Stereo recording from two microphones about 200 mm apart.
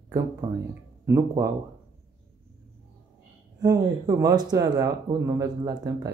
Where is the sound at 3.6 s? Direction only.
15° right (ahead or behind).